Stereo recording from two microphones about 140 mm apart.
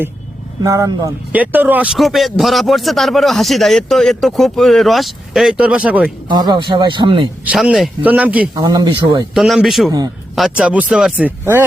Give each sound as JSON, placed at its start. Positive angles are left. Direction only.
{"t": 0.6, "sound": "speech", "side_deg": -25}
{"t": 1.3, "sound": "speech", "side_deg": -10}
{"t": 6.2, "sound": "speech", "side_deg": -30}
{"t": 7.4, "sound": "speech", "side_deg": -5}
{"t": 8.5, "sound": "speech", "side_deg": -30}
{"t": 9.3, "sound": "speech", "side_deg": 0}